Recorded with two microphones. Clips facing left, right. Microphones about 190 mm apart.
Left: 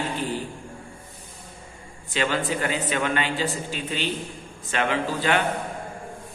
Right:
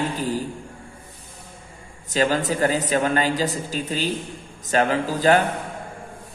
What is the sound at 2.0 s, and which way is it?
A man's voice, 40° right (ahead or behind).